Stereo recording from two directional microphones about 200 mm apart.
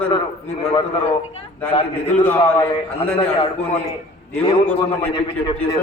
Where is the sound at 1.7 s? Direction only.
30° left (ahead or behind).